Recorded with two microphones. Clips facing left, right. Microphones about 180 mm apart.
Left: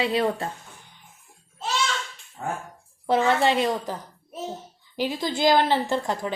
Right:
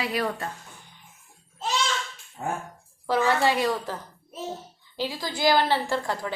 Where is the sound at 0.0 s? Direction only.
25° left (ahead or behind).